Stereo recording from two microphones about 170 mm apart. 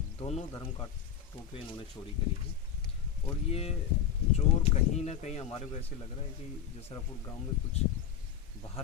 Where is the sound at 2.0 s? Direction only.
20° left (ahead or behind).